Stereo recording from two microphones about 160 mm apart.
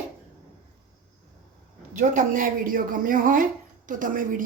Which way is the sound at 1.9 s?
55° right (ahead or behind).